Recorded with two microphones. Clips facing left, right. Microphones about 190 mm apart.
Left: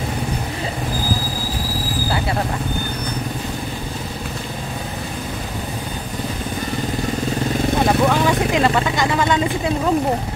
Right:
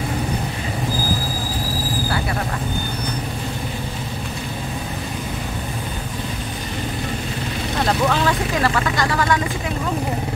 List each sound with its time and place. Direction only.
7.8 s vehicle: 15° left (ahead or behind)